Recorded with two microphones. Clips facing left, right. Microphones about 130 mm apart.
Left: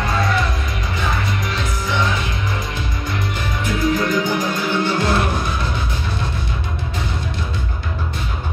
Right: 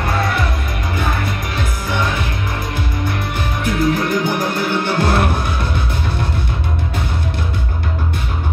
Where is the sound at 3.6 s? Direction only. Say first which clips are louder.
Right 2 dB; 55° right (ahead or behind).